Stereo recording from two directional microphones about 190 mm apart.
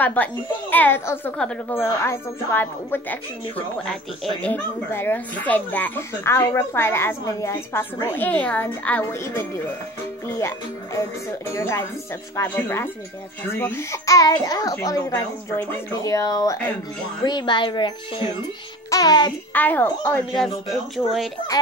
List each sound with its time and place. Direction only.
0.0 s speech: 10° left (ahead or behind); by 17.9 s 25° left (ahead or behind)
18.9 s music: 20° left (ahead or behind)
19.5 s speech: 10° left (ahead or behind)